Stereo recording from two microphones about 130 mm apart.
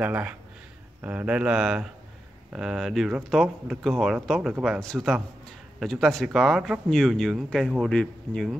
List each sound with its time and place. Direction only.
0.0 s speech: 10° right (ahead or behind); by 8.5 s 5° left (ahead or behind)